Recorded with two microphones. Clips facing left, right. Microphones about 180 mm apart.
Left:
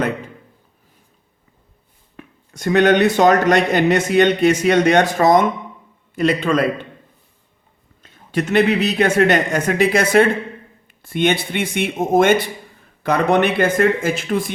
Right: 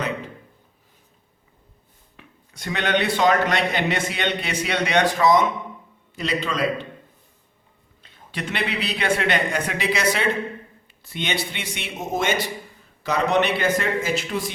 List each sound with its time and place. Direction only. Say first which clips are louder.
2.1 s speech: left 9 dB; 45° left (ahead or behind)
8.0 s speech: left 10 dB; 45° left (ahead or behind)